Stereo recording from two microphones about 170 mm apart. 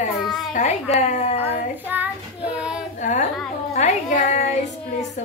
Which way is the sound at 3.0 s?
45° left (ahead or behind).